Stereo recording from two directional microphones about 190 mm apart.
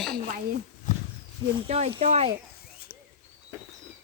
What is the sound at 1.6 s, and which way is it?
Speech, 30° right (ahead or behind).